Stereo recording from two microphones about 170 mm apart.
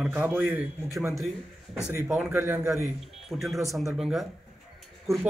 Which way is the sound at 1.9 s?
10° right (ahead or behind).